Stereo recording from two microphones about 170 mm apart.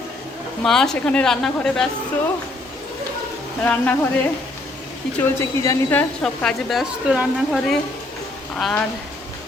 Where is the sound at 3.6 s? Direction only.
10° left (ahead or behind).